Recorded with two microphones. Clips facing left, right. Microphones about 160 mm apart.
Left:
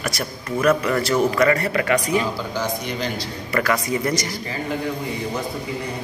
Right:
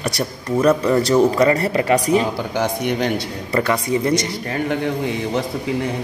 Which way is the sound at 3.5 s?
25° right (ahead or behind).